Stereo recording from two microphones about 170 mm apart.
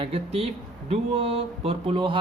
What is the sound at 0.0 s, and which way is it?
Speech, 35° right (ahead or behind).